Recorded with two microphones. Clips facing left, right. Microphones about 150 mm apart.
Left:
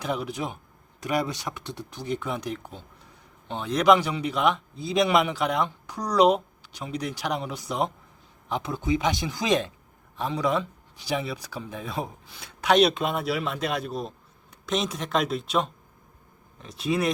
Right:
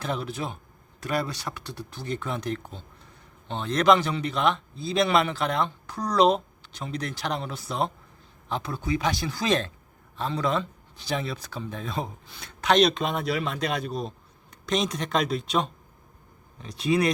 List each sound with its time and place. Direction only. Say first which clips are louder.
0.0 s speech: left 1 dB; 15° left (ahead or behind)